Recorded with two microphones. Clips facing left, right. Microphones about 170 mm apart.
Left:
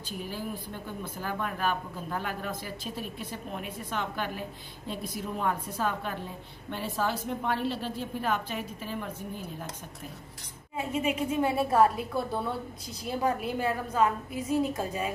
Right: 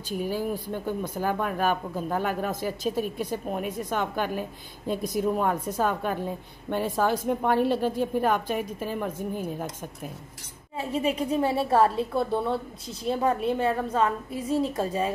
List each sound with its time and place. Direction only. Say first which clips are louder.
1.2 s a woman's voice: right 5 dB; 45° right (ahead or behind)
10.8 s a woman's voice: right 3 dB; 30° right (ahead or behind)